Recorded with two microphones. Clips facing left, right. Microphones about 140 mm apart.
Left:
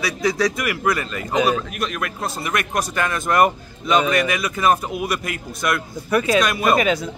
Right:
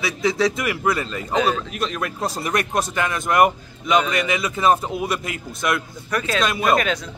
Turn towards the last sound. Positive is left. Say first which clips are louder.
# left 2 dB
turn(degrees=5)  # may be behind; listen again after turning